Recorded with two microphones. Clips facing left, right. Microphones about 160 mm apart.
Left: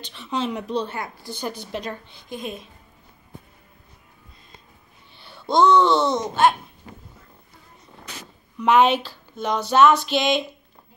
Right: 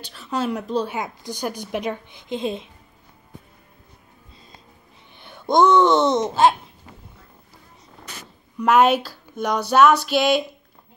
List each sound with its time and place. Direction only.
0.0 s speech: 5° right (ahead or behind)
0.9 s a woman's voice: 20° right (ahead or behind)
5.2 s speech: 20° right (ahead or behind)
8.5 s a woman's voice: 5° right (ahead or behind)